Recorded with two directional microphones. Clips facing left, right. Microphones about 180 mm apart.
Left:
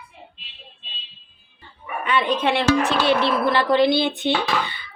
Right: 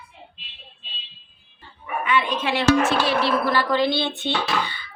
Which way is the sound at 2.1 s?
35° left (ahead or behind).